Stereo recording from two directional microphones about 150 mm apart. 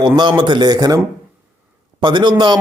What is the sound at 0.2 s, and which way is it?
A man's voice, 30° right (ahead or behind).